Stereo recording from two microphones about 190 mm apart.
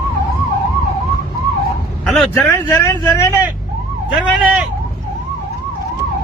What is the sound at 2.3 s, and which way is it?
Speech, 10° left (ahead or behind).